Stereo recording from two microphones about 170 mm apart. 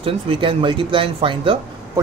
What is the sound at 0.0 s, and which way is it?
Speech, 30° right (ahead or behind).